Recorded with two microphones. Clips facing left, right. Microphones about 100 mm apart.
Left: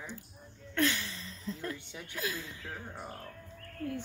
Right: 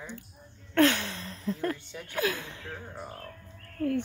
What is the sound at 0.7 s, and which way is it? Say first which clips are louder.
Speech: right 8 dB; 55° right (ahead or behind).